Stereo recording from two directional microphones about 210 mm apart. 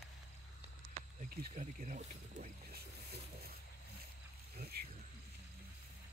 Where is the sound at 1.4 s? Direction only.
40° right (ahead or behind).